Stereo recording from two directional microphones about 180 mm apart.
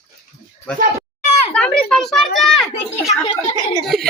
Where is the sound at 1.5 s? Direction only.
5° left (ahead or behind).